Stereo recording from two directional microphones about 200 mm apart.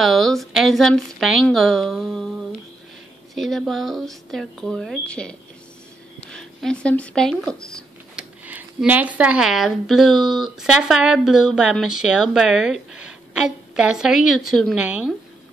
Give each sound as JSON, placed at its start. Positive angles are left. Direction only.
{"t": 0.0, "sound": "speech", "side_deg": 0}
{"t": 6.3, "sound": "speech", "side_deg": 5}
{"t": 8.5, "sound": "speech", "side_deg": -10}